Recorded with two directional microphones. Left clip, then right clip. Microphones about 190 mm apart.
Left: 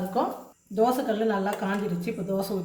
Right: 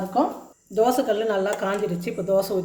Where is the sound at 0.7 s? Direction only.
50° right (ahead or behind).